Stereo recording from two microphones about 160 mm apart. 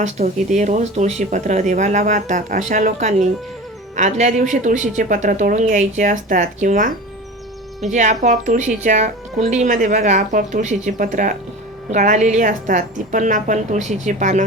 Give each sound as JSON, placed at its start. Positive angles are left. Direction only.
{"t": 0.0, "sound": "speech", "side_deg": -45}